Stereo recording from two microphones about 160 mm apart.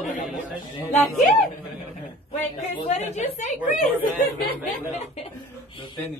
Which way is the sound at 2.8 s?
45° left (ahead or behind).